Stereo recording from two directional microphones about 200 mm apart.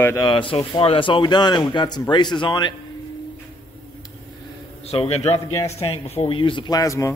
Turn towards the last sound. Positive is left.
turn(degrees=15)  # may be behind; listen again after turning